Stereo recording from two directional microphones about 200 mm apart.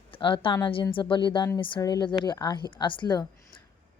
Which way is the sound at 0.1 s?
25° left (ahead or behind).